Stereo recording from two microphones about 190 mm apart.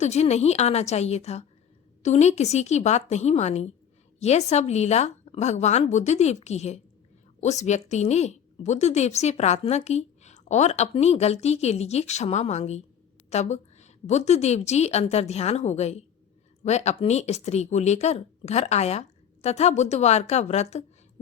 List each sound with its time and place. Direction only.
0.0 s a woman's voice: 35° left (ahead or behind)